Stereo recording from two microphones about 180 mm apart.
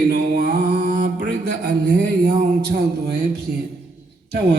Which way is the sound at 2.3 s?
50° right (ahead or behind).